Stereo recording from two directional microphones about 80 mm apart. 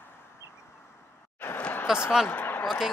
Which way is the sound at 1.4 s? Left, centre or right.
Left.